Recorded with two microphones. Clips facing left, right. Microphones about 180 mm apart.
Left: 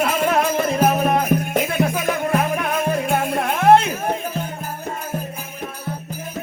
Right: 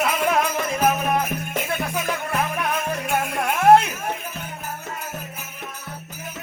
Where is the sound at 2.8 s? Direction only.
30° left (ahead or behind).